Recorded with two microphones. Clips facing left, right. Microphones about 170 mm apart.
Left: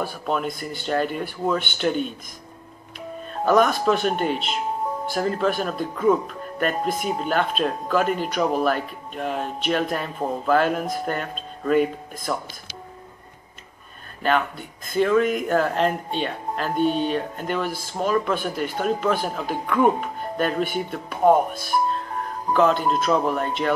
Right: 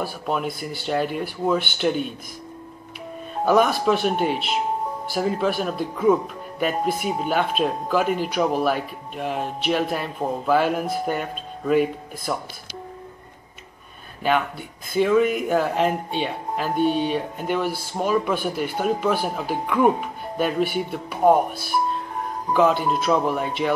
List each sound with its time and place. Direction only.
0.0 s speech: 5° right (ahead or behind)
3.4 s speech: 5° right (ahead or behind)
14.9 s speech: 5° right (ahead or behind)